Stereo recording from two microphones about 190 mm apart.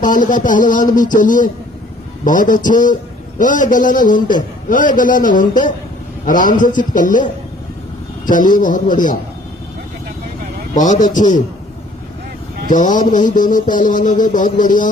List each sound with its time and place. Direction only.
0.0 s music: 45° left (ahead or behind)
8.3 s music: 45° left (ahead or behind)
10.8 s a man's voice: 40° left (ahead or behind)
12.6 s music: 45° left (ahead or behind)